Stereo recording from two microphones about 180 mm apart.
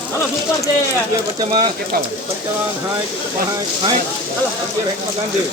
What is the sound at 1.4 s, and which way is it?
Speech, 30° right (ahead or behind).